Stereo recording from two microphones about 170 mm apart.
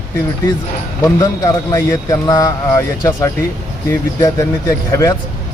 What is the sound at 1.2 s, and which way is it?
Speech, 20° left (ahead or behind).